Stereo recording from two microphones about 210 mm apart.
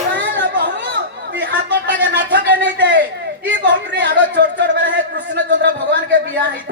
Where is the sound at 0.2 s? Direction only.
55° right (ahead or behind).